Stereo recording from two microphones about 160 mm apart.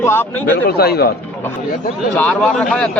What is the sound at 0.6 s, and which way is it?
Speech, 75° left (ahead or behind).